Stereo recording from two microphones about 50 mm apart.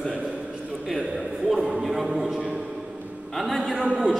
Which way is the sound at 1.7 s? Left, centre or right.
Centre.